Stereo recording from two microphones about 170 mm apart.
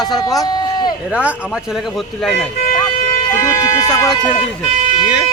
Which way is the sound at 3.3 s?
20° left (ahead or behind).